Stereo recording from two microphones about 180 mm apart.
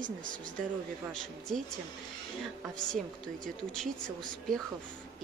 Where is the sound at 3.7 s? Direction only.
5° left (ahead or behind).